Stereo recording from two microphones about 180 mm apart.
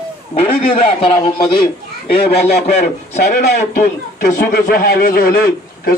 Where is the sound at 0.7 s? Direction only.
30° left (ahead or behind).